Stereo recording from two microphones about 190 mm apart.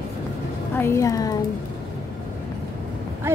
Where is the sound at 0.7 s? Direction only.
15° left (ahead or behind).